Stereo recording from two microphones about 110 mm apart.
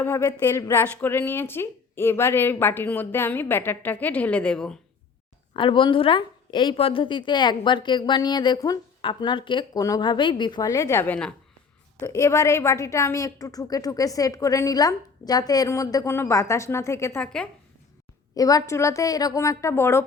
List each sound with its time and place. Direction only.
0.0 s speech: 30° left (ahead or behind); by 4.8 s 5° left (ahead or behind)
5.5 s a woman's voice: 50° left (ahead or behind); by 8.8 s 35° left (ahead or behind)
9.0 s a woman's voice: 50° left (ahead or behind)
10.7 s speech: 25° left (ahead or behind)
11.0 s a woman's voice: 10° left (ahead or behind)
11.9 s a woman's voice: 25° left (ahead or behind)
17.2 s a woman's voice: 10° left (ahead or behind)
18.3 s speech: 30° left (ahead or behind)